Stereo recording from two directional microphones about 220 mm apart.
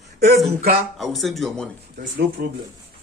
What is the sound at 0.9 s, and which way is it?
Speech, centre (ahead or behind).